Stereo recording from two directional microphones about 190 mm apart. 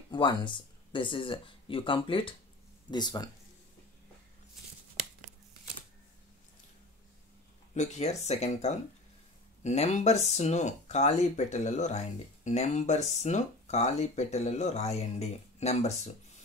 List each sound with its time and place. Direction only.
0.1 s speech: 25° left (ahead or behind)
7.7 s speech: 40° left (ahead or behind)